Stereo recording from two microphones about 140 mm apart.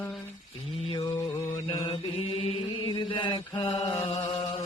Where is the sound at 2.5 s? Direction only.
40° left (ahead or behind).